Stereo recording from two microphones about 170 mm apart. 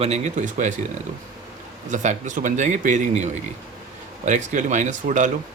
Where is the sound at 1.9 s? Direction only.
45° right (ahead or behind).